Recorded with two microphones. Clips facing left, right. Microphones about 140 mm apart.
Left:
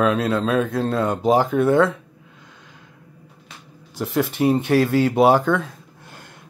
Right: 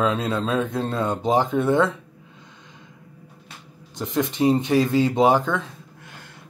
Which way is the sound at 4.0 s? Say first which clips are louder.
Left 1 dB; 10° left (ahead or behind).